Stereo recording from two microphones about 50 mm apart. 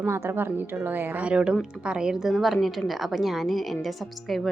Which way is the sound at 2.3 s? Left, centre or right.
Centre.